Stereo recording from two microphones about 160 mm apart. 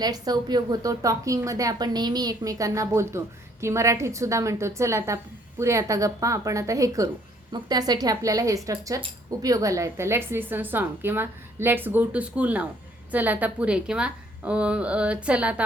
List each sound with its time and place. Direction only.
0.0 s a woman's voice: 25° right (ahead or behind); by 15.6 s 10° right (ahead or behind)